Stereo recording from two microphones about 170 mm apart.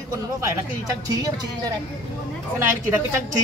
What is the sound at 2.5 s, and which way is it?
Speech, 15° right (ahead or behind).